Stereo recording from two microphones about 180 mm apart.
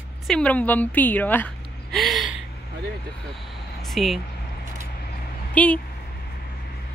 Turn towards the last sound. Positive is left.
turn(degrees=10)  # may be behind; listen again after turning